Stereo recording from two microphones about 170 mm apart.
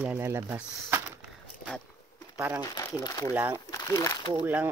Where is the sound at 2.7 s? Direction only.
20° left (ahead or behind).